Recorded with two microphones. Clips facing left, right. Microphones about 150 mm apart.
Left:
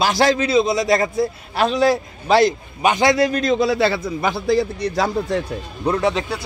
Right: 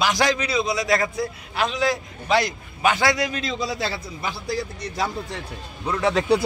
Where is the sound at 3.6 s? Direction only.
65° left (ahead or behind).